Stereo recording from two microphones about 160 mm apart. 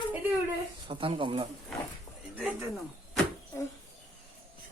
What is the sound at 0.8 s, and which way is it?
Speech, 35° right (ahead or behind).